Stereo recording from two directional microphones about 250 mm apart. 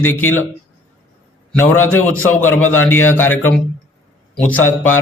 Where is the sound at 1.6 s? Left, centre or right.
Centre.